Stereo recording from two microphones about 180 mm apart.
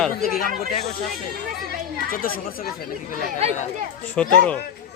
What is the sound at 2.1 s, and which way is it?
Speech, 50° left (ahead or behind).